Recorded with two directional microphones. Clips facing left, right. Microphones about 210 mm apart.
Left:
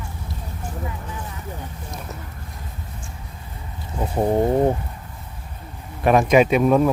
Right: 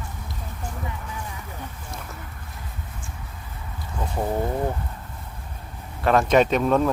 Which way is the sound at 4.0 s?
25° left (ahead or behind).